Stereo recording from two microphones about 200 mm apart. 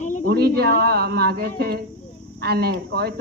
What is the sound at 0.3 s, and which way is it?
Speech, 50° right (ahead or behind).